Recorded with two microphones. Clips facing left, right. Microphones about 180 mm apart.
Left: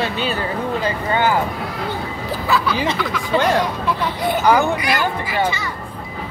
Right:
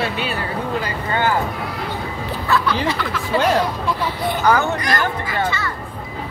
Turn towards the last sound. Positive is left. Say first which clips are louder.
# left 1 dB
turn(degrees=10)  # may be behind; listen again after turning